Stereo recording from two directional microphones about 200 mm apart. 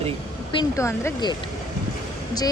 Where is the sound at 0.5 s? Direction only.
15° left (ahead or behind).